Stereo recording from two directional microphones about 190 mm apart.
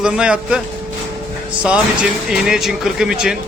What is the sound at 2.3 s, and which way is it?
A man's voice, centre (ahead or behind).